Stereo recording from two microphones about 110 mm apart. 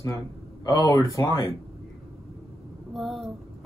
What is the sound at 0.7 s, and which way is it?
Speech, 35° left (ahead or behind).